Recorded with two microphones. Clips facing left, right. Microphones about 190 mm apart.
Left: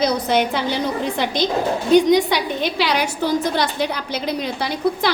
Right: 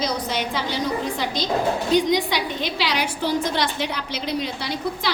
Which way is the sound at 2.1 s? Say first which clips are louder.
Left 5 dB; 50° left (ahead or behind).